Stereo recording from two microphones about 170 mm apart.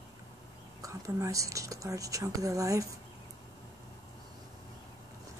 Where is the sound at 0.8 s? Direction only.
20° right (ahead or behind).